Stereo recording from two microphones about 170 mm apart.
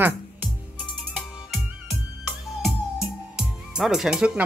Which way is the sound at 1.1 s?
Centre (ahead or behind).